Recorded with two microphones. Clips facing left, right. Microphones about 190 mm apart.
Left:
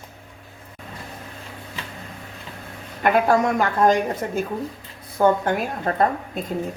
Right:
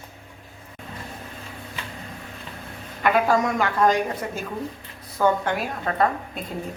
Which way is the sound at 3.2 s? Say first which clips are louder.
Left 2 dB; 45° left (ahead or behind).